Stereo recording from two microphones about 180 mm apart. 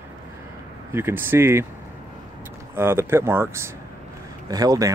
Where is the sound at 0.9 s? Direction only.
10° right (ahead or behind).